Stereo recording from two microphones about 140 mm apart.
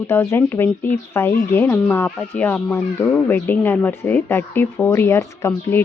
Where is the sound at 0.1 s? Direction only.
15° left (ahead or behind).